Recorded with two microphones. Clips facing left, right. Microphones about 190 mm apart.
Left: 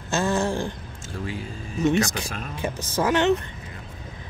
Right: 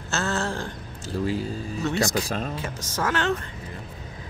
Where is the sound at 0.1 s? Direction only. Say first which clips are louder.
Left 4 dB; 15° left (ahead or behind).